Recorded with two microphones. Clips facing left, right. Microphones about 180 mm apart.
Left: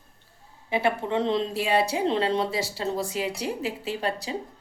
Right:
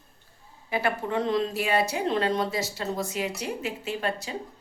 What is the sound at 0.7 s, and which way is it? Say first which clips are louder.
Speech: left 2 dB; 25° left (ahead or behind).